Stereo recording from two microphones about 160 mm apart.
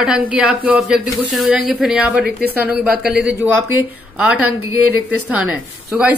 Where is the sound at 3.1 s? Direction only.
90° right.